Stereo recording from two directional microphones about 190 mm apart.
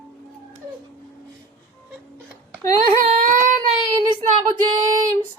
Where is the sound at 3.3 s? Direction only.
40° right (ahead or behind).